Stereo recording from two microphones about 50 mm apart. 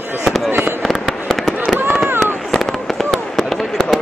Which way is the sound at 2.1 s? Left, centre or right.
Right.